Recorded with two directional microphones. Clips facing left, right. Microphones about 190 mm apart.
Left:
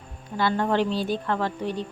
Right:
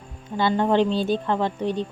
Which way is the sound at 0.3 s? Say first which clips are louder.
Right 3 dB; 20° right (ahead or behind).